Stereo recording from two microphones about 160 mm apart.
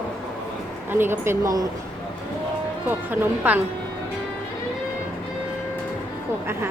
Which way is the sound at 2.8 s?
10° right (ahead or behind).